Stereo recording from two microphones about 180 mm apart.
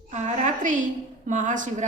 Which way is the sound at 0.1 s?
40° right (ahead or behind).